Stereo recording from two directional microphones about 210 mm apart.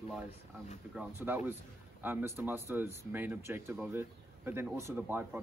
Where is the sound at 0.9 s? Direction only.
10° right (ahead or behind).